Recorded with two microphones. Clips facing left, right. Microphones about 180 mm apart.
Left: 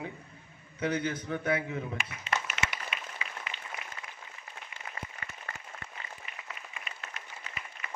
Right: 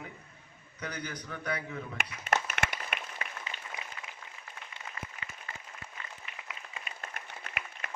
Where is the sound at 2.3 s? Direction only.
55° right (ahead or behind).